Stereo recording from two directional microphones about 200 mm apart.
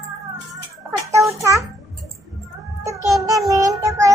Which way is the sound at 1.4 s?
15° right (ahead or behind).